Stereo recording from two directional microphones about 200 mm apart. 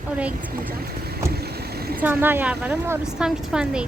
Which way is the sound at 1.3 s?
50° right (ahead or behind).